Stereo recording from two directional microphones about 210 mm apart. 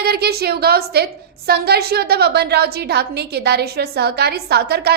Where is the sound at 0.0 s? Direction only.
50° right (ahead or behind).